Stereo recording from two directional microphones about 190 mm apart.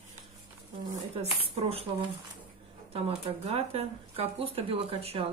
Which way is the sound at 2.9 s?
30° right (ahead or behind).